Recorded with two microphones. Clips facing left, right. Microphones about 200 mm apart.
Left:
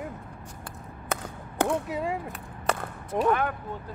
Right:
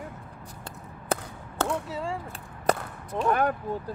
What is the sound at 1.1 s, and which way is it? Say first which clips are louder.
Chop: right 3 dB; 30° right (ahead or behind).